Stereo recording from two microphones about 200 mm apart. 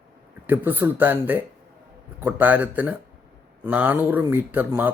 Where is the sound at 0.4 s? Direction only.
10° right (ahead or behind).